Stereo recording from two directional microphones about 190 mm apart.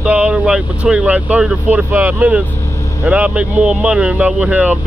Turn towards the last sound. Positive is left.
turn(degrees=-10)  # may be behind; listen again after turning